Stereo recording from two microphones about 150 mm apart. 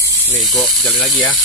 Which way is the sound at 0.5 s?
5° left (ahead or behind).